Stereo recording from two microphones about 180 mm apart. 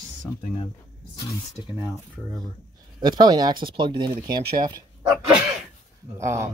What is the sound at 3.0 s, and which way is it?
Speech, 20° right (ahead or behind).